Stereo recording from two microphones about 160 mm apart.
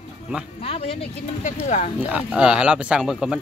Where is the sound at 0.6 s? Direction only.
40° left (ahead or behind).